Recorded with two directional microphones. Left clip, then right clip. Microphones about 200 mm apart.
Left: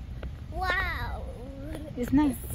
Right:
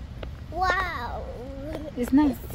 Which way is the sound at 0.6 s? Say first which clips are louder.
Right 4 dB; 25° right (ahead or behind).